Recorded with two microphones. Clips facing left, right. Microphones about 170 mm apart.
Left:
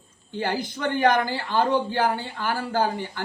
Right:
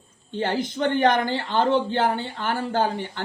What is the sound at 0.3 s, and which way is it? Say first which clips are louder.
Speech: right 2 dB; 20° right (ahead or behind).